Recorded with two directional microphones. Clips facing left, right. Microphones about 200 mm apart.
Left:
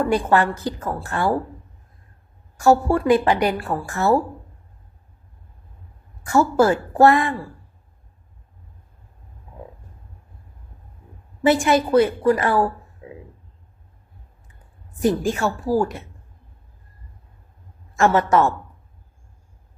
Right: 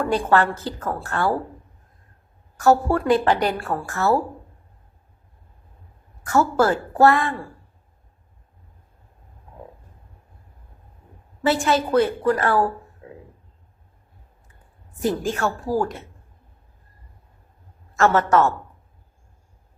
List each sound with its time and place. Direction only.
0.0 s a woman's voice: 10° left (ahead or behind)
2.6 s a woman's voice: 10° left (ahead or behind)
3.6 s a woman's voice: centre (ahead or behind)
3.8 s a woman's voice: 15° left (ahead or behind)
6.2 s a woman's voice: 15° left (ahead or behind)
11.4 s a woman's voice: 15° left (ahead or behind)
15.0 s a woman's voice: 10° left (ahead or behind)
17.9 s a woman's voice: 15° left (ahead or behind)